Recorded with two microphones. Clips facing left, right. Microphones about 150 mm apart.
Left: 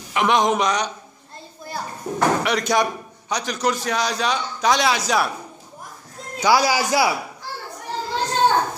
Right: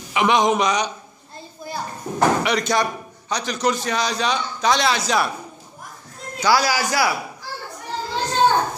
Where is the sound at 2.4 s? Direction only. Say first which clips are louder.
Even; 5° left (ahead or behind).